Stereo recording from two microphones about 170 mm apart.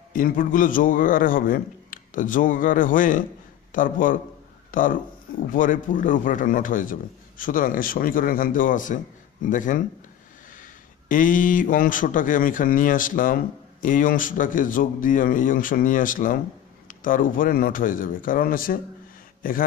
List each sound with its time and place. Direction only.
0.1 s speech: 55° left (ahead or behind)
11.1 s speech: 50° left (ahead or behind)